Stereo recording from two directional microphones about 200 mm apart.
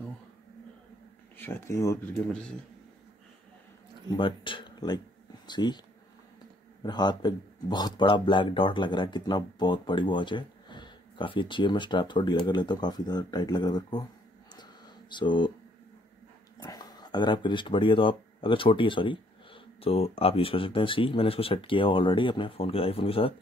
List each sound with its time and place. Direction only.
1.4 s speech: 10° left (ahead or behind)
4.2 s speech: 25° left (ahead or behind)
6.8 s speech: 20° left (ahead or behind)
14.5 s a sound: 20° left (ahead or behind)
16.5 s speech: 20° left (ahead or behind)